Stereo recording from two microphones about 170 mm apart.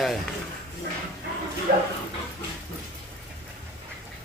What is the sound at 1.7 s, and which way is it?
Bow-wow, 55° right (ahead or behind).